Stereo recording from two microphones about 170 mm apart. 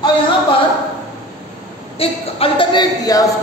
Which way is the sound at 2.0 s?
30° left (ahead or behind).